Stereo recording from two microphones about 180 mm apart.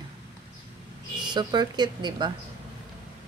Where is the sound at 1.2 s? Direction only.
25° right (ahead or behind).